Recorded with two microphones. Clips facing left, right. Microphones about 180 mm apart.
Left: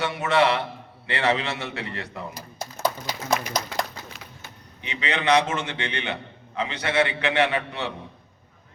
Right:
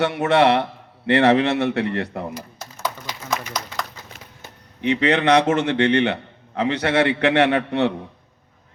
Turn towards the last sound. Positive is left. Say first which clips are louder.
# right 7 dB
turn(degrees=-60)  # may be behind; listen again after turning